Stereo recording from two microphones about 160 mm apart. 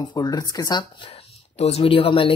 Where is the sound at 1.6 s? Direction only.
40° left (ahead or behind).